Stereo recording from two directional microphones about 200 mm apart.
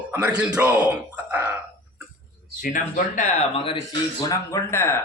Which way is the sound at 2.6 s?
40° left (ahead or behind).